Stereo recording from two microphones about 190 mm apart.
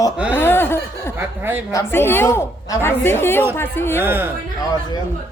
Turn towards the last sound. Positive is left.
turn(degrees=-10)  # may be behind; listen again after turning